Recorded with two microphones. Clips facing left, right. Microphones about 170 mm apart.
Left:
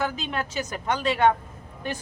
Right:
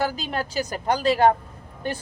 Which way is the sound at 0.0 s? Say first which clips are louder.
Right 2 dB; 35° right (ahead or behind).